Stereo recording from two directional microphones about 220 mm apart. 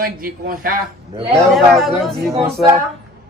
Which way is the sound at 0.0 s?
40° right (ahead or behind).